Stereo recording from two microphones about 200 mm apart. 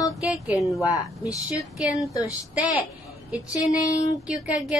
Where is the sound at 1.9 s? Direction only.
15° left (ahead or behind).